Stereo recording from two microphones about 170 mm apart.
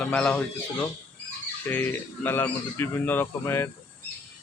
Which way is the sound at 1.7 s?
10° left (ahead or behind).